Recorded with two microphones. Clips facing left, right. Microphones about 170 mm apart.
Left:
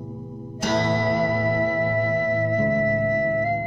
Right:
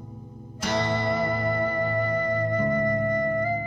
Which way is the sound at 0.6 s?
50° left (ahead or behind).